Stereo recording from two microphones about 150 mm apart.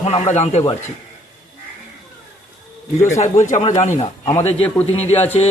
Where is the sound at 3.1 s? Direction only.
50° left (ahead or behind).